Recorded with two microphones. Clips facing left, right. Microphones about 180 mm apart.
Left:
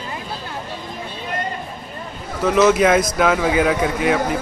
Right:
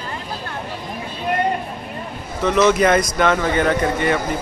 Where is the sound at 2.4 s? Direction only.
5° left (ahead or behind).